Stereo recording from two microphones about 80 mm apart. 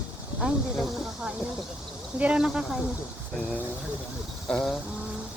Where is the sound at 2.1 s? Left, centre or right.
Centre.